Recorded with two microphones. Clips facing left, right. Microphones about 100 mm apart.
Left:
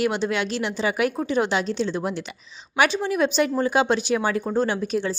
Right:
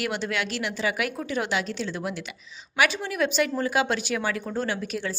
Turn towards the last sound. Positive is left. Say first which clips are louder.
# left 5 dB
turn(degrees=25)  # may be behind; listen again after turning